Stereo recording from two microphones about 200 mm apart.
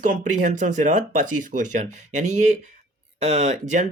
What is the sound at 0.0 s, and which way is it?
Speech, 40° right (ahead or behind).